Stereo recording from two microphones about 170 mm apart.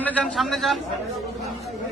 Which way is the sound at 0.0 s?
5° left (ahead or behind).